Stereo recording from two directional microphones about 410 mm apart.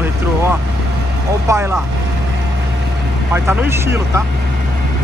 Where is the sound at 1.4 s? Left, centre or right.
Centre.